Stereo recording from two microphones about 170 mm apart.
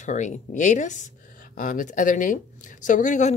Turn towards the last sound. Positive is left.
turn(degrees=45)  # may be behind; listen again after turning